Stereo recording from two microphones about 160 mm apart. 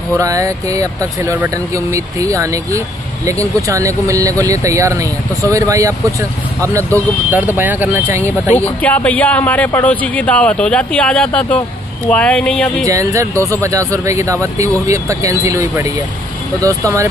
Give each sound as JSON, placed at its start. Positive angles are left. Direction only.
{"t": 0.2, "sound": "speech", "side_deg": -20}
{"t": 8.5, "sound": "speech", "side_deg": 10}
{"t": 12.8, "sound": "speech", "side_deg": -20}